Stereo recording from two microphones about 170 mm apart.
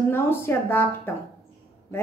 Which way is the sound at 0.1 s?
15° left (ahead or behind).